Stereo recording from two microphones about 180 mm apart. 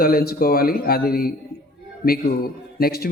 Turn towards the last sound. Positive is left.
turn(degrees=60)  # may be behind; listen again after turning